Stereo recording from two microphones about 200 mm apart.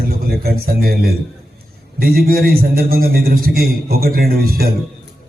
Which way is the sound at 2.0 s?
50° right (ahead or behind).